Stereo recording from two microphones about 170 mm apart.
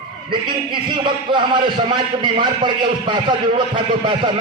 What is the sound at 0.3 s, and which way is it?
A man's voice, 30° right (ahead or behind).